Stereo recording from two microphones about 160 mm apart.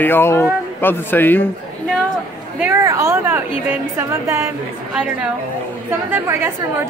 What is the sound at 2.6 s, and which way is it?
A woman's voice, 15° right (ahead or behind).